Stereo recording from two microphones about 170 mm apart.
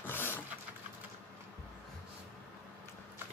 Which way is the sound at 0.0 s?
10° left (ahead or behind).